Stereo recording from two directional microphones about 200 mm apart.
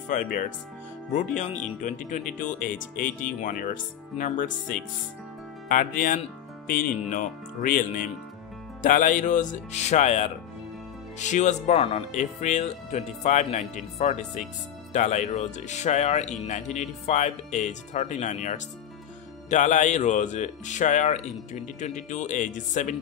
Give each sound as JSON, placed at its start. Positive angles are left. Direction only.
{"t": 0.1, "sound": "speech", "side_deg": 40}